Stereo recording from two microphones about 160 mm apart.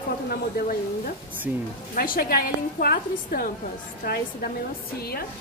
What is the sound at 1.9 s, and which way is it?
A woman's voice, 65° left (ahead or behind).